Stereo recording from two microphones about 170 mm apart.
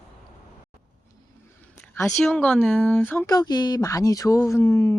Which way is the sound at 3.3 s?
25° left (ahead or behind).